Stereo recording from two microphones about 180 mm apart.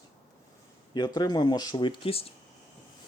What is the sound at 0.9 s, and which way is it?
Speech, 25° left (ahead or behind).